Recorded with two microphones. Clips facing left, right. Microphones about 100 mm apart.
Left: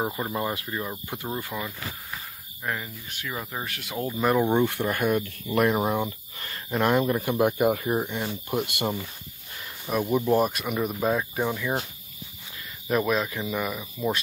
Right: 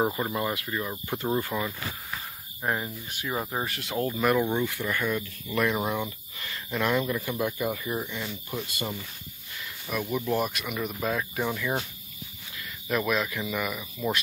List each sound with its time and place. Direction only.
0.3 s speech: 20° left (ahead or behind)
1.2 s speech: 5° left (ahead or behind)
2.6 s speech: 25° right (ahead or behind)
3.6 s speech: centre (ahead or behind)
4.2 s speech: 25° left (ahead or behind)
4.6 s speech: 55° left (ahead or behind)
5.5 s speech: 40° left (ahead or behind)
7.3 s speech: 60° left (ahead or behind)
9.6 s a sound: 35° left (ahead or behind)
10.3 s speech: 40° left (ahead or behind)
11.1 s speech: 20° left (ahead or behind)
12.8 s speech: 30° left (ahead or behind)